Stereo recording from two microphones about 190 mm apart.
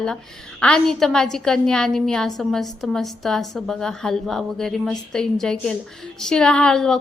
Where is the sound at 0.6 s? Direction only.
5° left (ahead or behind).